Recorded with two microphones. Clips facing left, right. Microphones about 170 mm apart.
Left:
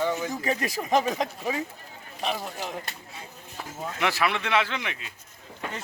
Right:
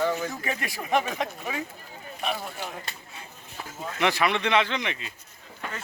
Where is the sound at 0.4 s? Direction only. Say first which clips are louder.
Left 4 dB; 35° left (ahead or behind).